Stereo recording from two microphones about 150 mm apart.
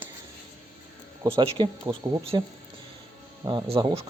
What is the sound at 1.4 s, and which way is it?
Speech, 30° right (ahead or behind).